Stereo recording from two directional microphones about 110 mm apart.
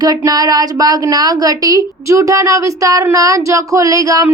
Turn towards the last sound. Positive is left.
turn(degrees=-30)  # may be behind; listen again after turning